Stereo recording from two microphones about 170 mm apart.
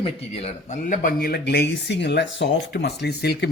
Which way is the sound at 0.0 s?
35° left (ahead or behind).